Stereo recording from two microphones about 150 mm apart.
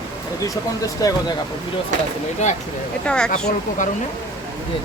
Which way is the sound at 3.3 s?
55° left (ahead or behind).